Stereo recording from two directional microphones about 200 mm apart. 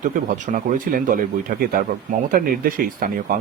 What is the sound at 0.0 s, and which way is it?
Speech, 40° right (ahead or behind).